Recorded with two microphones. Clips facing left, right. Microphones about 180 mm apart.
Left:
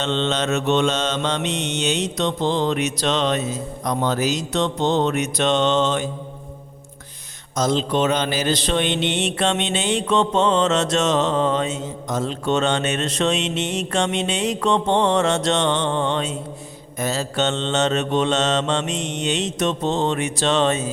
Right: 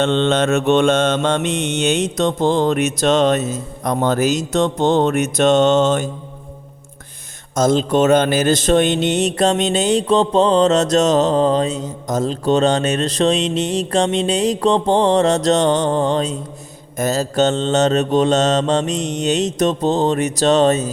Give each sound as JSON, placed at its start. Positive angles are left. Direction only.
{"t": 0.0, "sound": "mantra", "side_deg": -50}
{"t": 7.5, "sound": "a man's voice", "side_deg": -45}